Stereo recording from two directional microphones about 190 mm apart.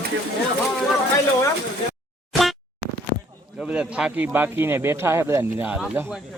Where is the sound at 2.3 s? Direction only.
Centre (ahead or behind).